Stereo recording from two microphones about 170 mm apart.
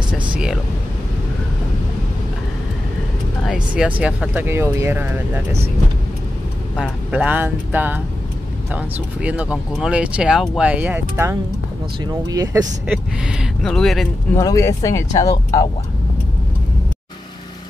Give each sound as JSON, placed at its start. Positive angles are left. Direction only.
{"t": 3.4, "sound": "a sound", "side_deg": -5}
{"t": 4.0, "sound": "speech", "side_deg": -10}
{"t": 6.8, "sound": "speech", "side_deg": -10}
{"t": 12.8, "sound": "speech", "side_deg": -5}
{"t": 14.3, "sound": "speech", "side_deg": 20}